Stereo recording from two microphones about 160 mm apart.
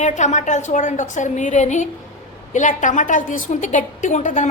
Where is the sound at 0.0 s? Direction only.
50° left (ahead or behind).